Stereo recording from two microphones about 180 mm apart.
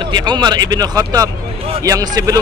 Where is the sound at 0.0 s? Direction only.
25° right (ahead or behind).